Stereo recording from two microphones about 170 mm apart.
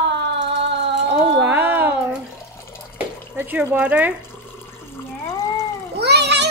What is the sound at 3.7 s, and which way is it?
Speech, 5° right (ahead or behind).